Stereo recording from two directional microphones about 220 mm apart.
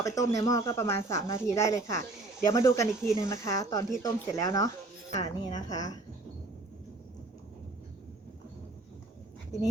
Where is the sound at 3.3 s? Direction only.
15° left (ahead or behind).